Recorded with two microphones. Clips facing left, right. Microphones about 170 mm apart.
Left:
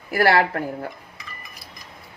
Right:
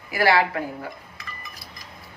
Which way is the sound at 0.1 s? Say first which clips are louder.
Left 2 dB; 55° left (ahead or behind).